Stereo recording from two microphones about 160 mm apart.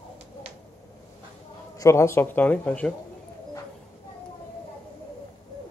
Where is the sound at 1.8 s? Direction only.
15° left (ahead or behind).